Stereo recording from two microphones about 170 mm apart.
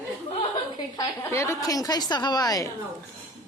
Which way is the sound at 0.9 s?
15° left (ahead or behind).